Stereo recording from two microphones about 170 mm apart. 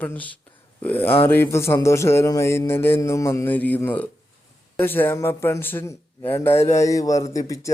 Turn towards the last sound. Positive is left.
turn(degrees=20)  # may be behind; listen again after turning